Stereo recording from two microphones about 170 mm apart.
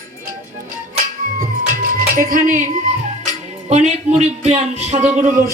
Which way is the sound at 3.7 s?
40° right (ahead or behind).